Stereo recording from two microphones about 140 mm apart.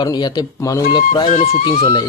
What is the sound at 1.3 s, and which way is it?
Speech, 55° left (ahead or behind).